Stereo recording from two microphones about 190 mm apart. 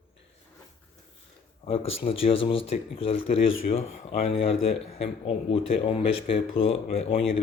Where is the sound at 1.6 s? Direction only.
30° left (ahead or behind).